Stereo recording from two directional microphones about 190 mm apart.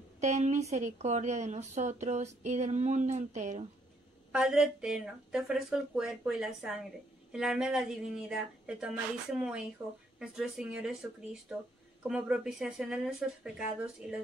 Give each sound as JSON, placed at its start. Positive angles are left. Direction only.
{"t": 0.2, "sound": "speech", "side_deg": -40}
{"t": 4.3, "sound": "speech", "side_deg": -5}